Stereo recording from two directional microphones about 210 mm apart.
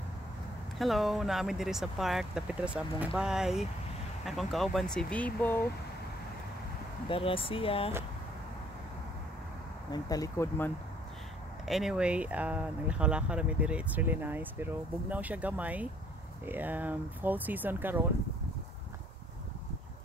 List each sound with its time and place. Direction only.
0.7 s speech: centre (ahead or behind)
7.1 s speech: 25° left (ahead or behind)
9.8 s speech: 15° left (ahead or behind)
11.6 s speech: centre (ahead or behind)